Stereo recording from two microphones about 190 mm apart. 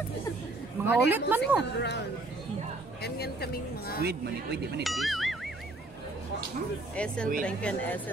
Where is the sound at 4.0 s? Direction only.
55° right (ahead or behind).